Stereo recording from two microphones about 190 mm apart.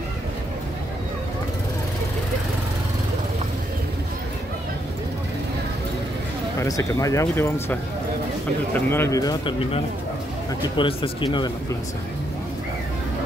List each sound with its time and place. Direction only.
6.6 s speech: 15° left (ahead or behind)
8.7 s speech: 10° left (ahead or behind); by 9.8 s 30° left (ahead or behind)
10.8 s speech: 30° left (ahead or behind)